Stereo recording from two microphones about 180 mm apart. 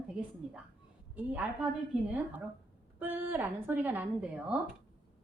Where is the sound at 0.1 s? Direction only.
5° right (ahead or behind).